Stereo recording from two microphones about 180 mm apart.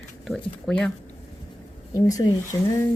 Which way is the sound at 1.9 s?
20° left (ahead or behind).